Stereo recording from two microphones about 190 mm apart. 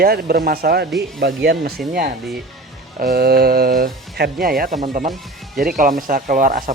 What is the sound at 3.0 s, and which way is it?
Speech, 55° right (ahead or behind).